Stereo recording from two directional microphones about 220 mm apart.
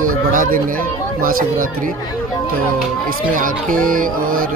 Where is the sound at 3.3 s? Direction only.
40° right (ahead or behind).